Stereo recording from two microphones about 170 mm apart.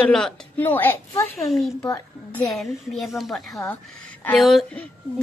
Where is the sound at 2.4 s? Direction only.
Centre (ahead or behind).